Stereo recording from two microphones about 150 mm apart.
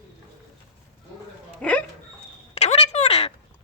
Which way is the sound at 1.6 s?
10° left (ahead or behind).